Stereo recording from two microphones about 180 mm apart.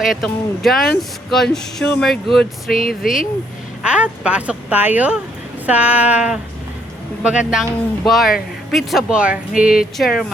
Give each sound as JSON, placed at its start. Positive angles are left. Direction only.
{"t": 0.0, "sound": "speech", "side_deg": 0}
{"t": 2.6, "sound": "speech", "side_deg": 50}
{"t": 3.8, "sound": "speech", "side_deg": -5}
{"t": 5.6, "sound": "a sound", "side_deg": -10}
{"t": 7.2, "sound": "speech", "side_deg": -5}